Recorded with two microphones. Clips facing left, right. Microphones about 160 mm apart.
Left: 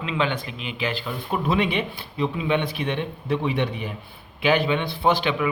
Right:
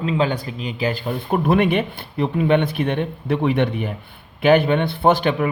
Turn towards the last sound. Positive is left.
turn(degrees=-50)  # may be behind; listen again after turning